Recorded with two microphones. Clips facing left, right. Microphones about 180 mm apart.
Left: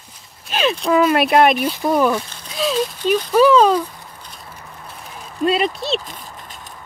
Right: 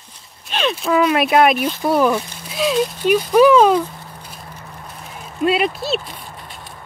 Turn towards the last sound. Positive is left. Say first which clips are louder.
# even
turn(degrees=-5)  # may be behind; listen again after turning